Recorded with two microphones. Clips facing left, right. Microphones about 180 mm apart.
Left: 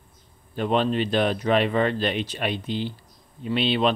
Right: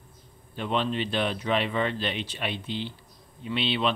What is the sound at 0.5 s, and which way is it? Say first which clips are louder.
Speech: left 5 dB; 45° left (ahead or behind).